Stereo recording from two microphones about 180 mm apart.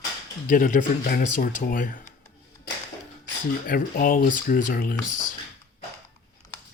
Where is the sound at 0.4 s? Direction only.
50° left (ahead or behind).